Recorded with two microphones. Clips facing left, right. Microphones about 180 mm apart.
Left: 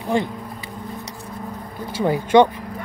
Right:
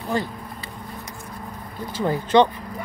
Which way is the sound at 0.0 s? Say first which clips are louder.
Left 4 dB; 20° left (ahead or behind).